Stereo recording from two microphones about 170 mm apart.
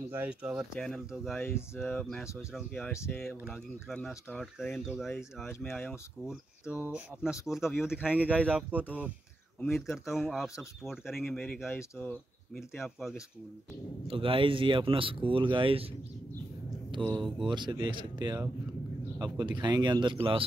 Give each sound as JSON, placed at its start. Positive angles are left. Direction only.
{"t": 0.1, "sound": "speech", "side_deg": -10}
{"t": 1.4, "sound": "speech", "side_deg": 15}
{"t": 2.0, "sound": "speech", "side_deg": 0}
{"t": 5.7, "sound": "speech", "side_deg": 10}
{"t": 6.7, "sound": "speech", "side_deg": -5}
{"t": 9.6, "sound": "speech", "side_deg": 5}
{"t": 12.5, "sound": "speech", "side_deg": 0}
{"t": 14.0, "sound": "a man's voice", "side_deg": -30}
{"t": 16.9, "sound": "speech", "side_deg": -30}